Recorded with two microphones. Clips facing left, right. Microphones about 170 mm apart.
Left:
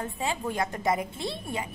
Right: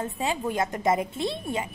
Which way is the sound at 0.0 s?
20° right (ahead or behind).